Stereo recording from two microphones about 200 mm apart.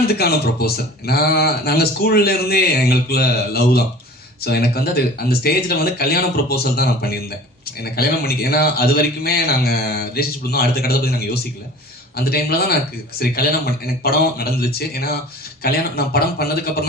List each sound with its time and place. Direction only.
0.1 s speech: 50° left (ahead or behind)